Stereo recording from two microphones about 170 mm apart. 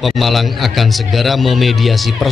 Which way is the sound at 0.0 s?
Centre (ahead or behind).